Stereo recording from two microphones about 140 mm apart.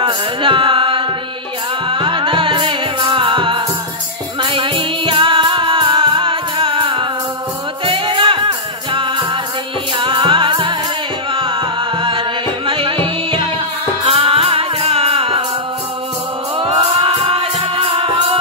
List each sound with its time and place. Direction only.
0.0 s music: 35° right (ahead or behind)
16.5 s music: 40° right (ahead or behind)